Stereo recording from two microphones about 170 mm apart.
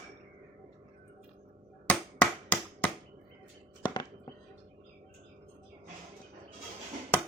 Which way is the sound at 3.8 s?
25° left (ahead or behind).